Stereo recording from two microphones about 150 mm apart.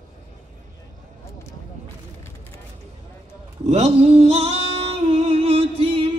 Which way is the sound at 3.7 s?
45° right (ahead or behind).